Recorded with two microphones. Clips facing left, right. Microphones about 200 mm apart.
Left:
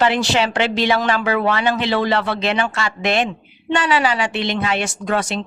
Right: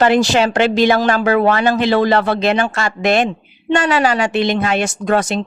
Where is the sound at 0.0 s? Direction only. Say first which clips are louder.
Right 5 dB; 45° right (ahead or behind).